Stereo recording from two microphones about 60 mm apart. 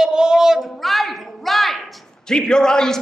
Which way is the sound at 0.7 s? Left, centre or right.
Centre.